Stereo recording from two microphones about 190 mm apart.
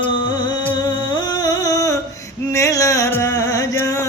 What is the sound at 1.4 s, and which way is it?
Music, 20° left (ahead or behind).